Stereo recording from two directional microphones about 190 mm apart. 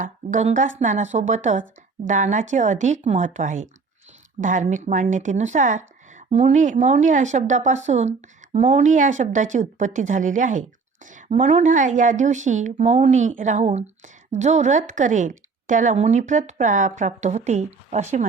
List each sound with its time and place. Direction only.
0.0 s speech: 40° right (ahead or behind)